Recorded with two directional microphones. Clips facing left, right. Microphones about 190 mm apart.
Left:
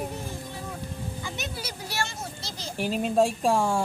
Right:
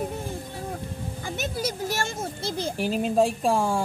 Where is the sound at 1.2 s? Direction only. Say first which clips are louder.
Right 10 dB; 50° right (ahead or behind).